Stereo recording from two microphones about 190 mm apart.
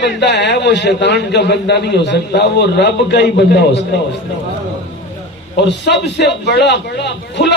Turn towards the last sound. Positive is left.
turn(degrees=65)  # may be behind; listen again after turning